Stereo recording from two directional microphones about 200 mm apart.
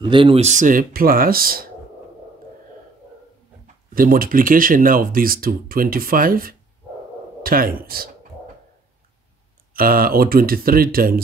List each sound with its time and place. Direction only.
0.0 s speech: 25° right (ahead or behind); by 1.7 s 45° right (ahead or behind)
3.6 s speech: 45° right (ahead or behind)
9.8 s speech: 45° right (ahead or behind)